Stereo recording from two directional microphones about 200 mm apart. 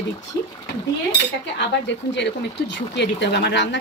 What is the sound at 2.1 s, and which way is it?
Speech, 60° left (ahead or behind).